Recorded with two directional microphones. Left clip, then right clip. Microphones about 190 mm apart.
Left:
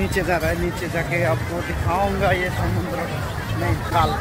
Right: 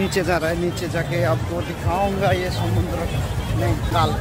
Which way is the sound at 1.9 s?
10° right (ahead or behind).